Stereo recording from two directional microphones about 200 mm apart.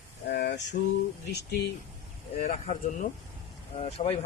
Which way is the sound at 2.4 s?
40° left (ahead or behind).